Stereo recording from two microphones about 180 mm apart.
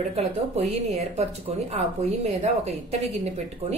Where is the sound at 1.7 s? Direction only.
40° right (ahead or behind).